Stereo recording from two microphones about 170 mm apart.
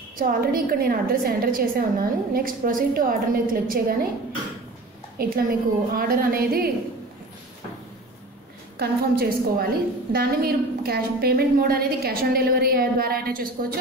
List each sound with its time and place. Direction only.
0.2 s a woman's voice: 60° right (ahead or behind)
5.2 s a woman's voice: 60° right (ahead or behind)
8.7 s a woman's voice: 65° right (ahead or behind)